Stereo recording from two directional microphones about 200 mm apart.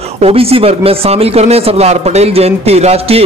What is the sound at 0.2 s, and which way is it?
Speech, 30° right (ahead or behind).